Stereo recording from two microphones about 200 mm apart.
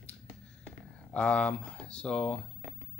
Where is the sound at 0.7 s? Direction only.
5° left (ahead or behind).